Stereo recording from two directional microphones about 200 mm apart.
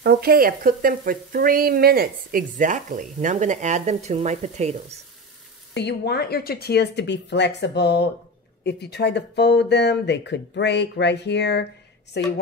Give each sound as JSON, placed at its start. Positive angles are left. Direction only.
{"t": 0.0, "sound": "speech", "side_deg": -50}
{"t": 5.8, "sound": "speech", "side_deg": 55}